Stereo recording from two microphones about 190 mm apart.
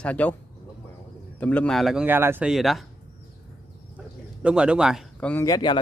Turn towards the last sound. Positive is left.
turn(degrees=20)  # may be behind; listen again after turning